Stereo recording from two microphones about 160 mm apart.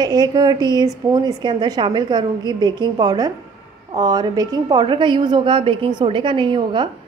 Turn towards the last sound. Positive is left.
turn(degrees=-30)  # may be behind; listen again after turning